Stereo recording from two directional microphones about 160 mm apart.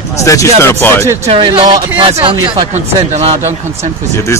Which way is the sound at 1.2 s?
35° right (ahead or behind).